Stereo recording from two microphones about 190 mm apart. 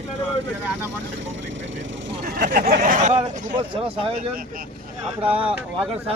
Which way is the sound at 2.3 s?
45° right (ahead or behind).